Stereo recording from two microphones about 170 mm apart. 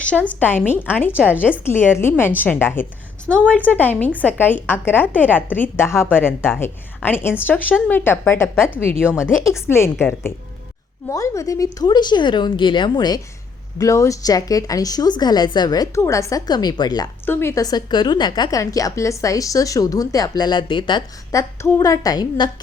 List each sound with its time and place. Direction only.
0.3 s a woman's voice: 10° left (ahead or behind)
1.1 s a woman's voice: 10° right (ahead or behind)
1.4 s a woman's voice: 10° left (ahead or behind)
9.0 s a woman's voice: 5° right (ahead or behind)
9.5 s a woman's voice: 15° left (ahead or behind)